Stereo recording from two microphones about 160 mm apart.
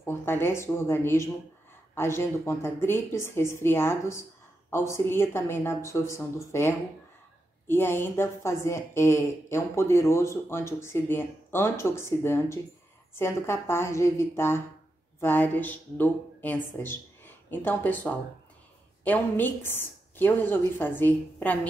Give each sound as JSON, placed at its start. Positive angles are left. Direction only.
{"t": 0.0, "sound": "a woman's voice", "side_deg": 15}
{"t": 7.6, "sound": "a woman's voice", "side_deg": 15}